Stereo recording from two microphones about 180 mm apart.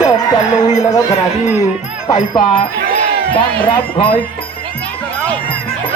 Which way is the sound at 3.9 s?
30° left (ahead or behind).